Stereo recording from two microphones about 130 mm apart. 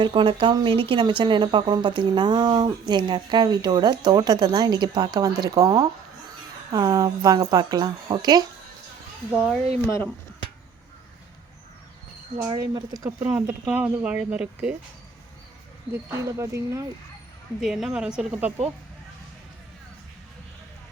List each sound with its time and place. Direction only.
0.0 s speech: 40° right (ahead or behind)
12.5 s speech: 30° right (ahead or behind)
13.3 s speech: 10° right (ahead or behind)
15.9 s speech: 20° right (ahead or behind)
17.6 s speech: centre (ahead or behind)